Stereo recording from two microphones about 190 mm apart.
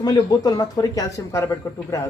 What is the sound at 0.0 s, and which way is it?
Speech, 20° left (ahead or behind).